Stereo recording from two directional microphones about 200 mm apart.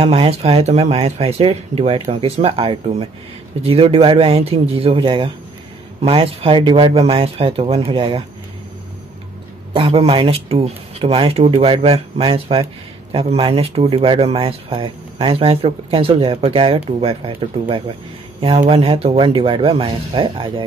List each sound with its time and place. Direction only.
0.0 s speech: 30° right (ahead or behind)
9.8 s speech: 30° right (ahead or behind)